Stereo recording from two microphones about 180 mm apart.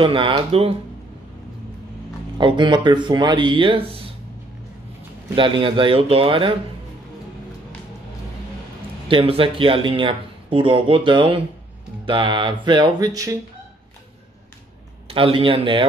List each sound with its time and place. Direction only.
0.0 s speech: 25° right (ahead or behind)
2.3 s speech: 25° right (ahead or behind)
5.3 s speech: 25° right (ahead or behind)
9.1 s speech: 30° right (ahead or behind)
15.0 s speech: 30° right (ahead or behind)